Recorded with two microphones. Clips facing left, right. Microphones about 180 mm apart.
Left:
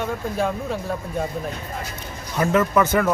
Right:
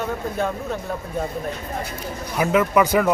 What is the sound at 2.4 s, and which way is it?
Speech, 10° right (ahead or behind).